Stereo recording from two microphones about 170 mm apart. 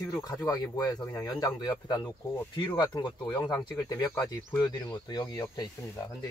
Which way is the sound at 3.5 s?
25° left (ahead or behind).